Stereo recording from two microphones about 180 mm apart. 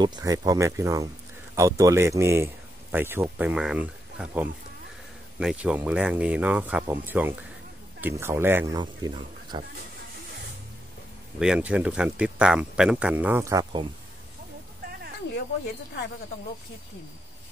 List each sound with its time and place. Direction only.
0.0 s speech: 20° right (ahead or behind)
8.7 s speech: 25° right (ahead or behind)
11.3 s speech: 5° right (ahead or behind)